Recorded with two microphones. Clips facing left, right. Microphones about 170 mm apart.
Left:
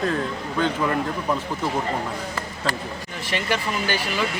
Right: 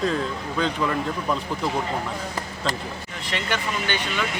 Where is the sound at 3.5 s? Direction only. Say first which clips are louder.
Left 2 dB; 35° left (ahead or behind).